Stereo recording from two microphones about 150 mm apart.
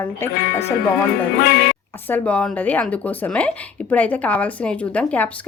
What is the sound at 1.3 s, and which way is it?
Speech, 90° left.